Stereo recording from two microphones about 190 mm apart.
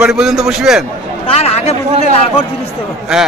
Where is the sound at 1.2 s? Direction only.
35° left (ahead or behind).